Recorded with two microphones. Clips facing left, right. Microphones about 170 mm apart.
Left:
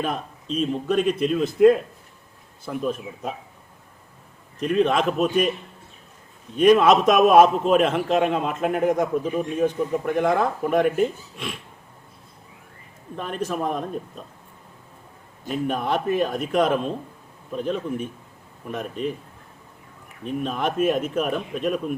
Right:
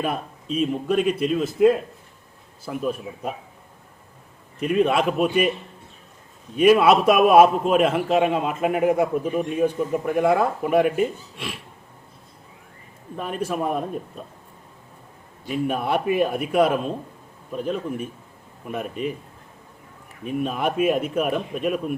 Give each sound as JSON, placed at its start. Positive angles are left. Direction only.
{"t": 0.0, "sound": "a man's voice", "side_deg": -5}
{"t": 4.6, "sound": "a man's voice", "side_deg": -5}
{"t": 6.6, "sound": "a man's voice", "side_deg": -5}
{"t": 13.1, "sound": "a man's voice", "side_deg": -5}
{"t": 15.5, "sound": "a man's voice", "side_deg": -5}
{"t": 20.2, "sound": "a man's voice", "side_deg": -5}